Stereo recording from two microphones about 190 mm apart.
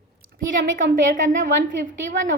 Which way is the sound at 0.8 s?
45° right (ahead or behind).